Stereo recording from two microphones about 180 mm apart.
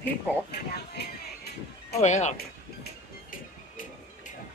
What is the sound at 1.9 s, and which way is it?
Speech, 40° left (ahead or behind).